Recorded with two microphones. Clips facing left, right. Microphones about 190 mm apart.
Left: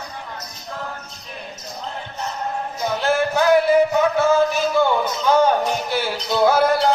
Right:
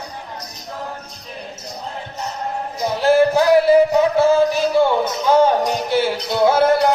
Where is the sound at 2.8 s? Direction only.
30° right (ahead or behind).